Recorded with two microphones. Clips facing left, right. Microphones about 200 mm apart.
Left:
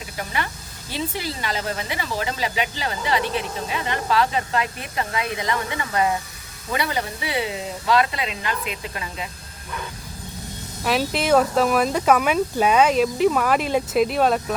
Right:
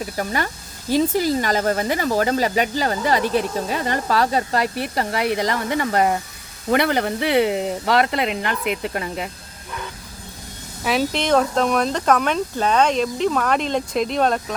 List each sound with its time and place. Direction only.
0.0 s speech: 45° right (ahead or behind)
5.1 s speech: 70° right (ahead or behind)
5.4 s speech: 45° right (ahead or behind)
6.7 s speech: 60° right (ahead or behind)
10.8 s speech: centre (ahead or behind)